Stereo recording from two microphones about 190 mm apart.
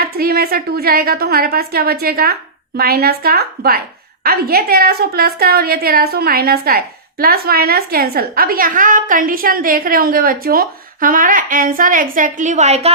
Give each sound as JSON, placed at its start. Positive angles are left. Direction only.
{"t": 0.0, "sound": "a woman's voice", "side_deg": -55}